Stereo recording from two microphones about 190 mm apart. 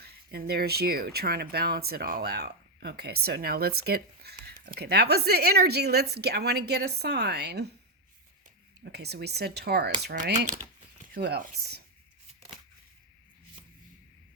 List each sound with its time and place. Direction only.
0.0 s speech: 55° right (ahead or behind)
8.8 s speech: 60° right (ahead or behind)
10.2 s speech: 40° right (ahead or behind)